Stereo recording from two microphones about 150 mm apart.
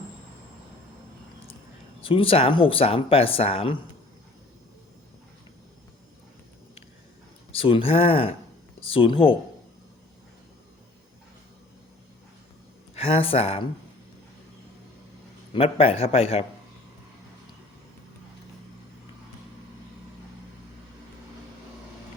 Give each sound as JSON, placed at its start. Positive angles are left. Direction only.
{"t": 2.0, "sound": "speech", "side_deg": 35}
{"t": 7.5, "sound": "speech", "side_deg": 40}
{"t": 13.0, "sound": "speech", "side_deg": 40}
{"t": 15.5, "sound": "speech", "side_deg": 40}